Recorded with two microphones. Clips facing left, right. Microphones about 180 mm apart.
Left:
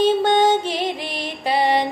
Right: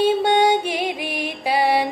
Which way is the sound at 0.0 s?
10° right (ahead or behind).